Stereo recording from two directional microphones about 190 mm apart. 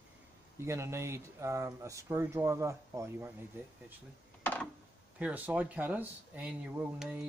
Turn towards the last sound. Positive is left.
turn(degrees=-5)  # may be behind; listen again after turning